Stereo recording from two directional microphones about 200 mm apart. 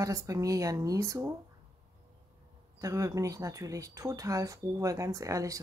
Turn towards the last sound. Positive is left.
turn(degrees=-15)  # may be behind; listen again after turning